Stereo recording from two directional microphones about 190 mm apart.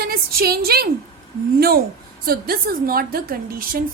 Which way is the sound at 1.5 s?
55° right (ahead or behind).